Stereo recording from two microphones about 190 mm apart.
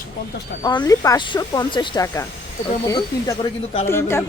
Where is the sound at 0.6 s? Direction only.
20° left (ahead or behind).